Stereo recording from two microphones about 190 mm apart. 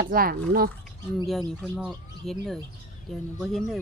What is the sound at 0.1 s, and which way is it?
Speech, 50° right (ahead or behind).